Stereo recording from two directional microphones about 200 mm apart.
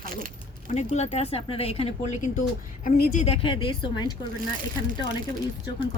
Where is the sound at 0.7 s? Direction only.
35° left (ahead or behind).